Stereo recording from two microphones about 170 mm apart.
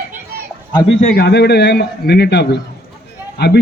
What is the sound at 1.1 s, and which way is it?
A man's voice, 80° left.